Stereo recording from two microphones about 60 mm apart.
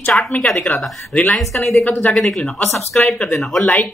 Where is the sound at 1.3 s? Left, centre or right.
Centre.